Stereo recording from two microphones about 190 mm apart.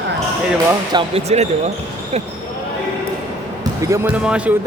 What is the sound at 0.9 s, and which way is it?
Speech, 30° right (ahead or behind).